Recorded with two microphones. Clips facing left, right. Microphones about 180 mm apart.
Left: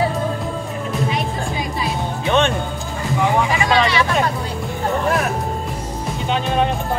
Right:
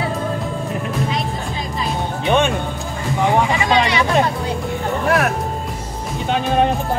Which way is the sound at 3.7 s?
20° right (ahead or behind).